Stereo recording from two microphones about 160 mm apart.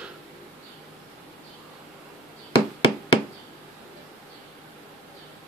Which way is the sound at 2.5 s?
35° left (ahead or behind).